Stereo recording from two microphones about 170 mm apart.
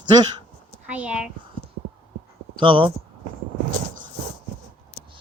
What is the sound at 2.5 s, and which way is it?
Speech, 30° right (ahead or behind).